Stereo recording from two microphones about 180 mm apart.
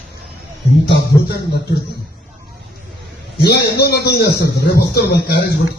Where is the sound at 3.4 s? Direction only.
65° left (ahead or behind).